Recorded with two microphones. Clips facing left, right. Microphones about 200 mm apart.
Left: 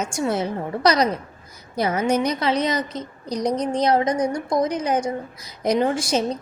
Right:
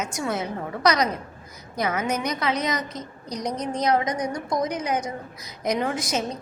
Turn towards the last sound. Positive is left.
turn(degrees=30)  # may be behind; listen again after turning